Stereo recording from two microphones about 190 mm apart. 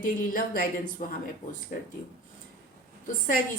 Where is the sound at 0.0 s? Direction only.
45° left (ahead or behind).